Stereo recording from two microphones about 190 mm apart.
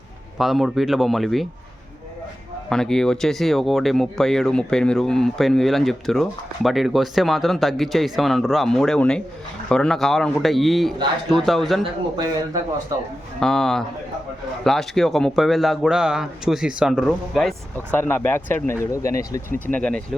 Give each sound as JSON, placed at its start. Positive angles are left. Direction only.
{"t": 0.3, "sound": "speech", "side_deg": 0}
{"t": 2.6, "sound": "speech", "side_deg": 5}
{"t": 12.1, "sound": "speech", "side_deg": -20}
{"t": 13.4, "sound": "speech", "side_deg": 0}
{"t": 19.5, "sound": "speech", "side_deg": 45}
{"t": 19.7, "sound": "speech", "side_deg": 5}